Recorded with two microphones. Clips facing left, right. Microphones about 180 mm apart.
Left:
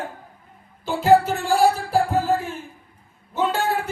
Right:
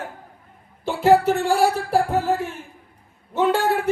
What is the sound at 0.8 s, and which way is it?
Speech, 65° right (ahead or behind).